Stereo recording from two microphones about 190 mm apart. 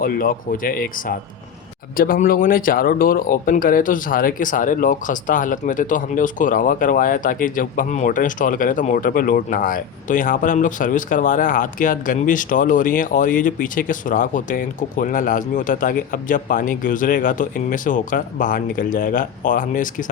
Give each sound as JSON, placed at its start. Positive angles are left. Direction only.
{"t": 0.0, "sound": "speech", "side_deg": 50}